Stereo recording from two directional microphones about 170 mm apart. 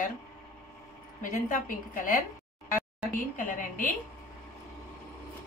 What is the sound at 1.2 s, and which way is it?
A woman's voice, 50° left (ahead or behind).